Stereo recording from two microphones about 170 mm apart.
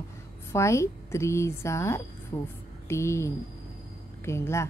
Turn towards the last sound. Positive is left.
turn(degrees=15)  # may be behind; listen again after turning